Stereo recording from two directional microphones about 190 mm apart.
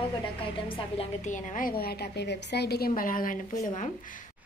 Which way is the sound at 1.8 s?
55° left (ahead or behind).